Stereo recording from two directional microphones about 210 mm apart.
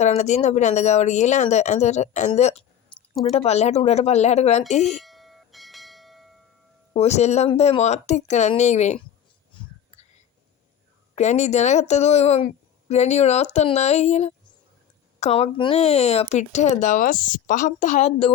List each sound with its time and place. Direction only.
0.0 s a woman's voice: 35° left (ahead or behind)
4.8 s bell: centre (ahead or behind)
6.9 s a woman's voice: 30° left (ahead or behind)
11.1 s a woman's voice: 35° left (ahead or behind)